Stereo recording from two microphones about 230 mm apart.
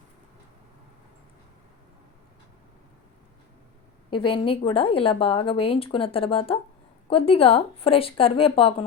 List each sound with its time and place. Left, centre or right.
4.1 s speech: left